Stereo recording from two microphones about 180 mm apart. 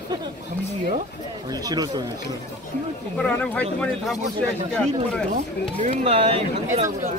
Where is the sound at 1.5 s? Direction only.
20° right (ahead or behind).